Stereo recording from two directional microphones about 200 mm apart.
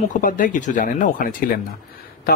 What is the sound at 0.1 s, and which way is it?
Speech, 40° left (ahead or behind).